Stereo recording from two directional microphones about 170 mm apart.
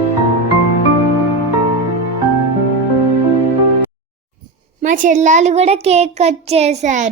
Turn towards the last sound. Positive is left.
turn(degrees=-40)  # may be behind; listen again after turning